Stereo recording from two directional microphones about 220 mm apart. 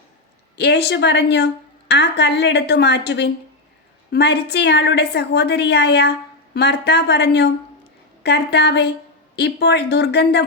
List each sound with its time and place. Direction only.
0.5 s a woman's voice: 50° left (ahead or behind)